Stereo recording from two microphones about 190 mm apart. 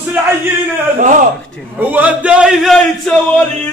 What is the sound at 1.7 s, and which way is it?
A man's voice, 10° right (ahead or behind).